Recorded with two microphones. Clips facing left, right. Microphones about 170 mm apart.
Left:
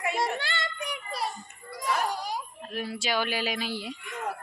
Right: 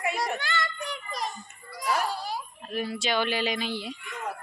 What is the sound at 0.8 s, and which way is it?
Music, 10° left (ahead or behind).